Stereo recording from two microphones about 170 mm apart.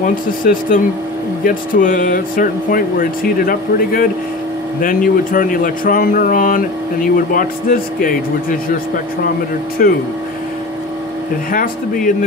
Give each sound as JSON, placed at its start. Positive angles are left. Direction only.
{"t": 0.0, "sound": "speech", "side_deg": 55}
{"t": 11.5, "sound": "speech", "side_deg": 55}